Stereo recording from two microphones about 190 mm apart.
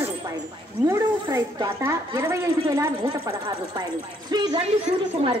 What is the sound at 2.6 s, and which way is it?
A woman's voice, 25° right (ahead or behind).